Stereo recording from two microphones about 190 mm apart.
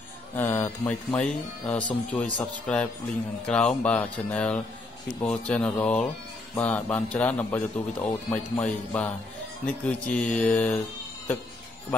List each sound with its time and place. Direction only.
0.4 s a man's voice: 10° left (ahead or behind)